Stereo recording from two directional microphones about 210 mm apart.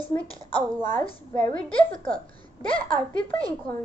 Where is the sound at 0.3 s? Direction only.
25° left (ahead or behind).